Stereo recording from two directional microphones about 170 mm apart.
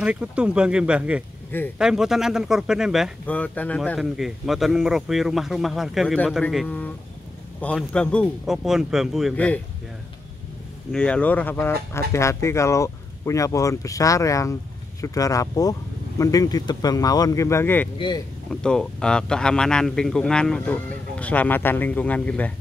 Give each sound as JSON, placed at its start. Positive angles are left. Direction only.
{"t": 0.0, "sound": "a man's voice", "side_deg": -5}
{"t": 3.3, "sound": "a man's voice", "side_deg": 10}
{"t": 9.3, "sound": "speech", "side_deg": 10}
{"t": 10.9, "sound": "speech", "side_deg": 5}
{"t": 17.9, "sound": "speech", "side_deg": 30}
{"t": 18.5, "sound": "a man's voice", "side_deg": 5}